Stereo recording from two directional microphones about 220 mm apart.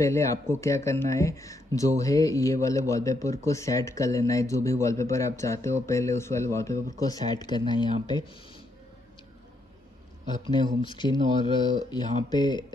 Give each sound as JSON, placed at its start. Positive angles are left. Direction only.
{"t": 0.0, "sound": "speech", "side_deg": 15}
{"t": 10.5, "sound": "speech", "side_deg": 20}